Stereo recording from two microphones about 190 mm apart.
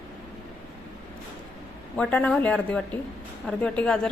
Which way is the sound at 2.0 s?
5° left (ahead or behind).